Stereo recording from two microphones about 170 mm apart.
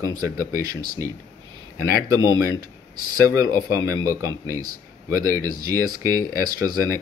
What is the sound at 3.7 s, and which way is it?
Speech, 20° right (ahead or behind).